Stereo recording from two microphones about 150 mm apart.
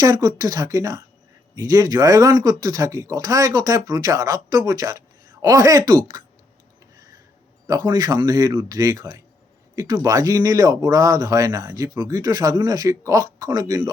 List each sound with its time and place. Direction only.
0.0 s speech: 25° right (ahead or behind)
7.7 s speech: 25° right (ahead or behind)